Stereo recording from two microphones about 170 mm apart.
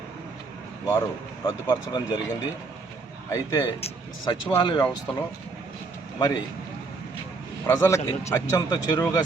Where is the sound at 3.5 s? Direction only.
25° left (ahead or behind).